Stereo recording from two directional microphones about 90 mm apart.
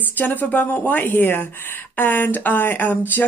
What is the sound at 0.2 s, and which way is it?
Speech, 20° left (ahead or behind).